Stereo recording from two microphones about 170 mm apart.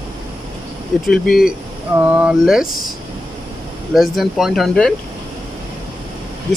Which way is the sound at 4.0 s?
Centre (ahead or behind).